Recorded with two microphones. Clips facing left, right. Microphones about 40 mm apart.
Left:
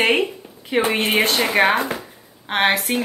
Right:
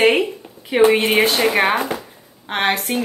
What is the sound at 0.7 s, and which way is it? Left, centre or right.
A woman's voice, centre.